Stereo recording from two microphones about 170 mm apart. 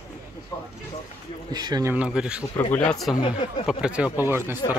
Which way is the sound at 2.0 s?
5° right (ahead or behind).